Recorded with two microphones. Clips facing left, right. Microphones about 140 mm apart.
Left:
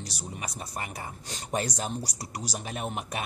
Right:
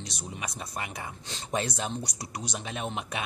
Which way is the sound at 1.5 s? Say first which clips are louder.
Even; 35° left (ahead or behind).